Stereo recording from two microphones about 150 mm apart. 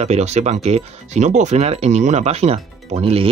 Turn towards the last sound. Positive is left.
turn(degrees=-40)  # may be behind; listen again after turning